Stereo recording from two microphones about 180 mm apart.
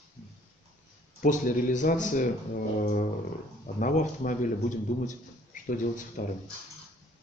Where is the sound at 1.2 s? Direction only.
45° left (ahead or behind).